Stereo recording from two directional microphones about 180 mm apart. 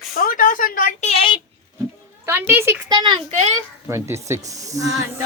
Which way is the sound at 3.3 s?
40° right (ahead or behind).